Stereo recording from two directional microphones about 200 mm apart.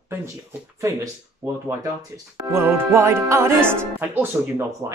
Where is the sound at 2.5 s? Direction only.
10° right (ahead or behind).